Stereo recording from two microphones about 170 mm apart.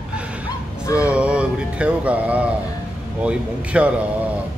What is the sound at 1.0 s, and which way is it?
Music, 5° right (ahead or behind).